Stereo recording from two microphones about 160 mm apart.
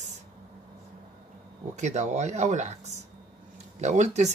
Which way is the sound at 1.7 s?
45° right (ahead or behind).